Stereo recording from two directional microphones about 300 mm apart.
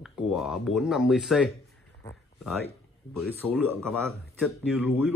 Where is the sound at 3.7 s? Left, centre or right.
Centre.